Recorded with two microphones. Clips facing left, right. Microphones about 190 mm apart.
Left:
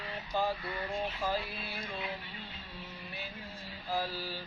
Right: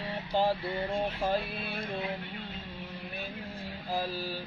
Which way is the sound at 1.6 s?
60° right (ahead or behind).